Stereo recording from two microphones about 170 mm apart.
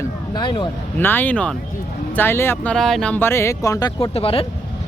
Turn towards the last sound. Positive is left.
turn(degrees=35)  # may be behind; listen again after turning